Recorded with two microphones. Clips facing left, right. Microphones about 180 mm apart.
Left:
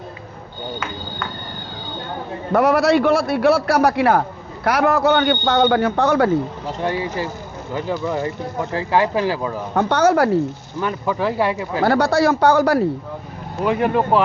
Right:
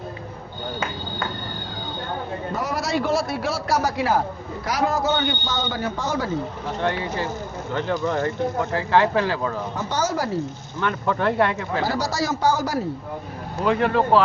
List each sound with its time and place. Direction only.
2.5 s a man's voice: 65° left (ahead or behind)
6.8 s speech: 10° left (ahead or behind)
9.7 s a man's voice: 60° left (ahead or behind)
10.8 s speech: 10° left (ahead or behind)
11.8 s a man's voice: 60° left (ahead or behind)
13.7 s speech: 10° left (ahead or behind)